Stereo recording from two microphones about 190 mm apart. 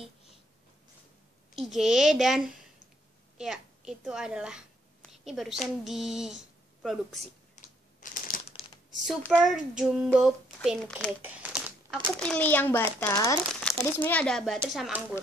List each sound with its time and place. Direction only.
1.5 s a woman's voice: centre (ahead or behind)
5.9 s a sound: centre (ahead or behind)
7.5 s a sound: 45° left (ahead or behind)
9.2 s speech: 5° left (ahead or behind)
12.2 s a child's voice: 5° left (ahead or behind)
13.5 s speech: 5° left (ahead or behind)